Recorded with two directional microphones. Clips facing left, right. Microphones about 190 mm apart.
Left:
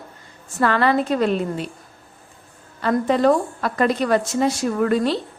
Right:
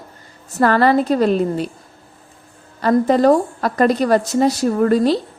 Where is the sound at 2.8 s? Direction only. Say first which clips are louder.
Right 4 dB; 40° right (ahead or behind).